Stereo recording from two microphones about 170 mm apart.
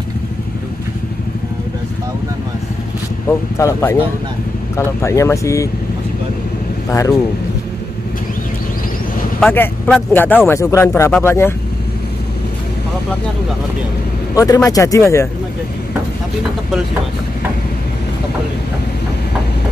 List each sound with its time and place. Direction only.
3.3 s speech: 15° left (ahead or behind)
6.9 s speech: 20° left (ahead or behind)
9.5 s speech: 10° left (ahead or behind)
14.3 s speech: 20° left (ahead or behind)